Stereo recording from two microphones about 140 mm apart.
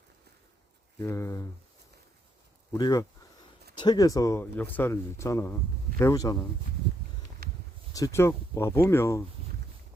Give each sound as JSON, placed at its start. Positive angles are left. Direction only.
{"t": 0.9, "sound": "speech", "side_deg": 20}
{"t": 2.7, "sound": "speech", "side_deg": 30}
{"t": 7.4, "sound": "a sound", "side_deg": -90}
{"t": 7.9, "sound": "speech", "side_deg": 20}